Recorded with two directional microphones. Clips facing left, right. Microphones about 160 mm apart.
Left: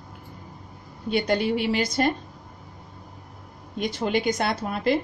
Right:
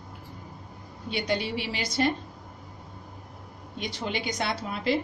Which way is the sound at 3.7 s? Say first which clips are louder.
Left 7 dB; 50° left (ahead or behind).